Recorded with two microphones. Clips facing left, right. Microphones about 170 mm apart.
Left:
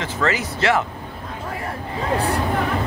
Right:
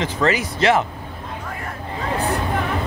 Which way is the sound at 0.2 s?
20° right (ahead or behind).